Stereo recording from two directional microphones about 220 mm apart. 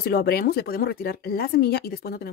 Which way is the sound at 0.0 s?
45° left (ahead or behind).